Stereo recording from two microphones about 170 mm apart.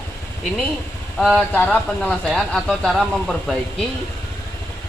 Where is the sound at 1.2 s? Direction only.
Centre (ahead or behind).